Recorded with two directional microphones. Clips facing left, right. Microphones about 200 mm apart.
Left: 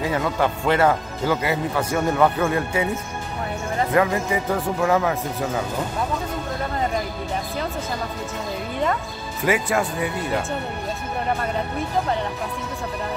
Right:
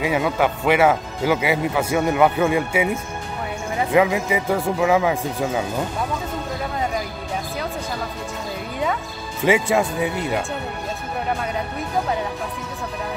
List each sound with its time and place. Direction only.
0.0 s speech: 10° right (ahead or behind)
3.9 s speech: 10° right (ahead or behind)
9.4 s speech: 20° right (ahead or behind)